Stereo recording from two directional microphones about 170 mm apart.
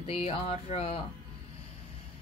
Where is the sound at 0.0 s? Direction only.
35° left (ahead or behind).